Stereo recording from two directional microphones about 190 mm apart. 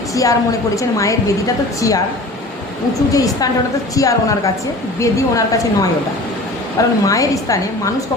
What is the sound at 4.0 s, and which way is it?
A woman's voice, 15° left (ahead or behind).